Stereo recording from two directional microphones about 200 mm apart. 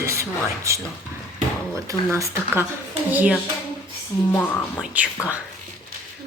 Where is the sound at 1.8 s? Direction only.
15° right (ahead or behind).